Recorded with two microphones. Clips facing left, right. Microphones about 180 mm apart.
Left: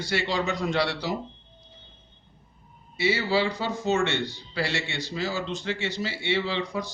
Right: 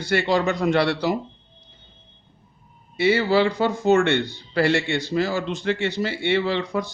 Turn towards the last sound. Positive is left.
turn(degrees=-60)  # may be behind; listen again after turning